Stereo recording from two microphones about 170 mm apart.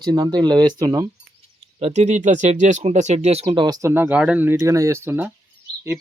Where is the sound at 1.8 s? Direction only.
40° right (ahead or behind).